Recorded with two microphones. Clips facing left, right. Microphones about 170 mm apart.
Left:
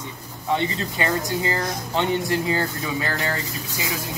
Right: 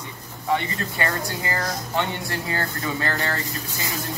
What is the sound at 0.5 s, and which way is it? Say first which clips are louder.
Speech: left 2 dB; 20° left (ahead or behind).